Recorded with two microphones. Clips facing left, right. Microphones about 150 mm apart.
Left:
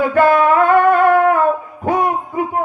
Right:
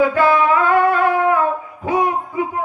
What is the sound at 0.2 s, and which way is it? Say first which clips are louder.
Music: left 3 dB; 50° left (ahead or behind).